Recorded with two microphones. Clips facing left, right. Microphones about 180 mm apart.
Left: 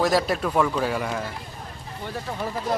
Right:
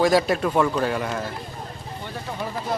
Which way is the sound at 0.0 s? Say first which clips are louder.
Right 3 dB; centre (ahead or behind).